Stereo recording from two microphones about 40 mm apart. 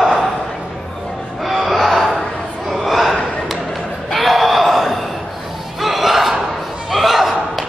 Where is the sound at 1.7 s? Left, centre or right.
Centre.